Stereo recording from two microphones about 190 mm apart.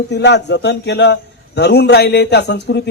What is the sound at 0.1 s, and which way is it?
A man's voice, 65° left (ahead or behind).